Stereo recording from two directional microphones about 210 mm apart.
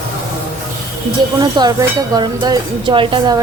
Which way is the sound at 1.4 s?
20° right (ahead or behind).